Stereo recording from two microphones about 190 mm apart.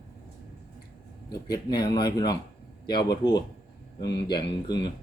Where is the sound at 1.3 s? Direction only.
20° left (ahead or behind).